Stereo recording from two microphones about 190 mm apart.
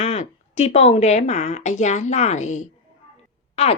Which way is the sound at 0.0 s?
35° left (ahead or behind).